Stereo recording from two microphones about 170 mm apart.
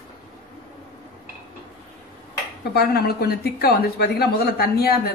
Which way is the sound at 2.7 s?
65° left (ahead or behind).